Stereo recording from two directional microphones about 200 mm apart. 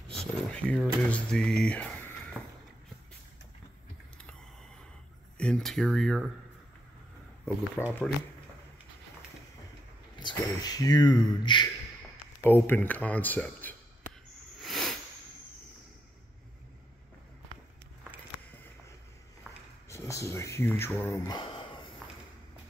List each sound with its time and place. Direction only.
0.1 s speech: 5° left (ahead or behind)
5.4 s speech: centre (ahead or behind)
7.8 s speech: 10° left (ahead or behind)
10.1 s speech: 20° left (ahead or behind)
14.6 s a sound: centre (ahead or behind)
19.9 s speech: 15° left (ahead or behind)